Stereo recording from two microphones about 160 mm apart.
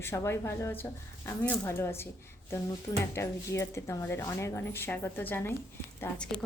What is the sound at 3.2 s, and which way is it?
Speech, 15° left (ahead or behind).